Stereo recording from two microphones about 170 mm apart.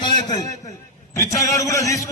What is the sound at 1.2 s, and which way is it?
Speech, 20° left (ahead or behind).